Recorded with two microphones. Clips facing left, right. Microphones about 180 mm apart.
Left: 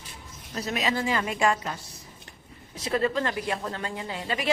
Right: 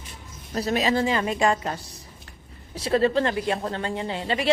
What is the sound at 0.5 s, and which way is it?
A woman's voice, 35° right (ahead or behind).